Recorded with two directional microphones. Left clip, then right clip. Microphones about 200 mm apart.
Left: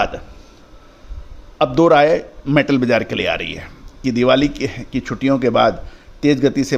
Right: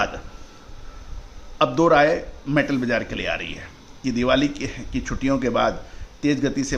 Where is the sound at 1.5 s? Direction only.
30° left (ahead or behind).